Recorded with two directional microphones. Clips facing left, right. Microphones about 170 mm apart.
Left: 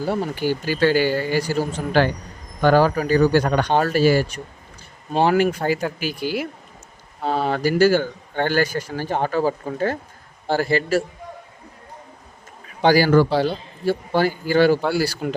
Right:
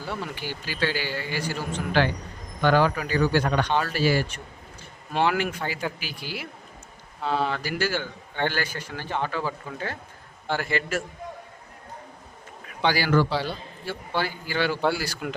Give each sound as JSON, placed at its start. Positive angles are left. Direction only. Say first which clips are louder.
{"t": 0.0, "sound": "a man's voice", "louder": "left 10 dB", "side_deg": 45}
{"t": 12.8, "sound": "a man's voice", "louder": "left 7 dB", "side_deg": 45}